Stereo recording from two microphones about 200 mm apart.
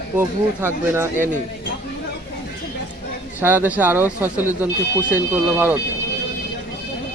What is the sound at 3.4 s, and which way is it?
Speech, 10° right (ahead or behind).